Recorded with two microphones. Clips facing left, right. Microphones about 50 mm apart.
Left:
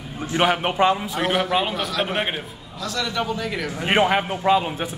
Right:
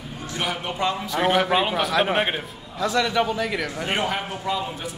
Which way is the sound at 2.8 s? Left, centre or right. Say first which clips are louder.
Right 4 dB; right.